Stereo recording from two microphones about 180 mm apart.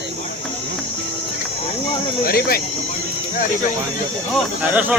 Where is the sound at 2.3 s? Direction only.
55° left (ahead or behind).